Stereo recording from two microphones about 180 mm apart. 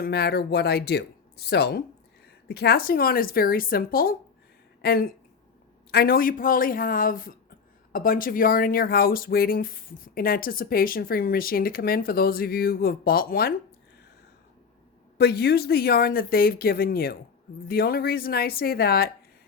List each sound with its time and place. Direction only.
0.0 s speech: 60° left (ahead or behind)
15.2 s speech: 65° left (ahead or behind)